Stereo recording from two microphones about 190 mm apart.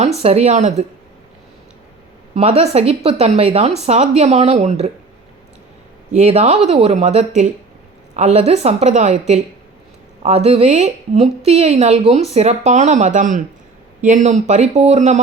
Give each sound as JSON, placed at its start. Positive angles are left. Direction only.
{"t": 0.2, "sound": "speech", "side_deg": -35}
{"t": 2.3, "sound": "speech", "side_deg": -35}
{"t": 6.1, "sound": "speech", "side_deg": -35}